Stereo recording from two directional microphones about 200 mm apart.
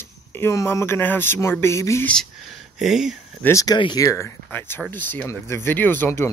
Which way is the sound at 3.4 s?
15° left (ahead or behind).